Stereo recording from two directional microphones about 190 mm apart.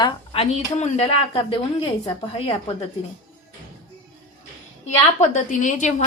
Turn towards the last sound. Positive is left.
turn(degrees=40)  # may be behind; listen again after turning